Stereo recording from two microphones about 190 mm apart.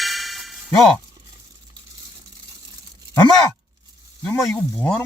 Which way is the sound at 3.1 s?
25° left (ahead or behind).